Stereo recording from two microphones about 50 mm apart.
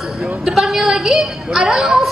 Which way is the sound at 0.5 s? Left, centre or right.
Centre.